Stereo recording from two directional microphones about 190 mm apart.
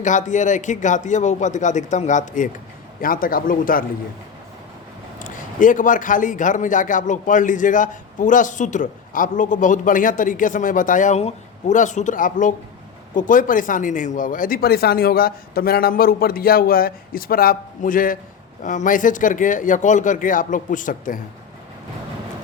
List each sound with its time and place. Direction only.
0.0 s a man's voice: 40° left (ahead or behind)
5.2 s a man's voice: 45° left (ahead or behind)